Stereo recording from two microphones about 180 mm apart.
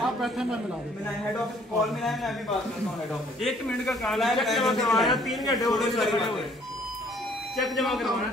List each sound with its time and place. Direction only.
0.0 s a man's voice: centre (ahead or behind)
1.8 s a man's voice: centre (ahead or behind)
3.4 s a man's voice: centre (ahead or behind)
5.4 s speech: 20° left (ahead or behind)
5.7 s a man's voice: centre (ahead or behind)
7.5 s a man's voice: centre (ahead or behind)